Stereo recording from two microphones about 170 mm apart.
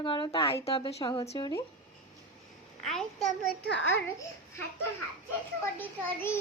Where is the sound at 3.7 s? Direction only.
90° left.